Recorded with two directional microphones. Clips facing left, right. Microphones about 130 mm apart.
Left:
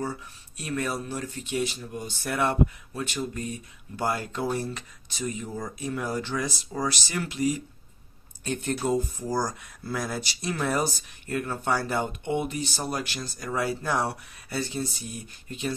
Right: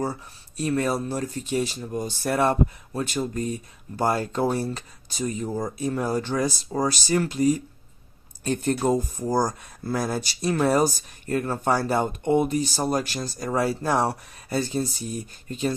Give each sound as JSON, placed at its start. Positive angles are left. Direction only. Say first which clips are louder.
{"t": 0.0, "sound": "speech", "louder": "right 4 dB", "side_deg": -35}